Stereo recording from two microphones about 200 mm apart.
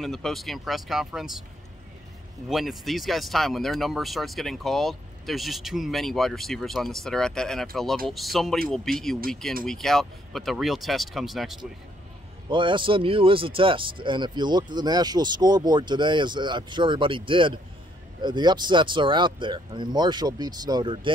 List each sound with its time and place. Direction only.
0.0 s speech: centre (ahead or behind)
2.5 s speech: centre (ahead or behind)
12.4 s speech: 25° right (ahead or behind)